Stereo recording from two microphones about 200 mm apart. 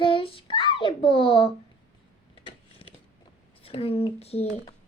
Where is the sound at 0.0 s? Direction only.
25° left (ahead or behind).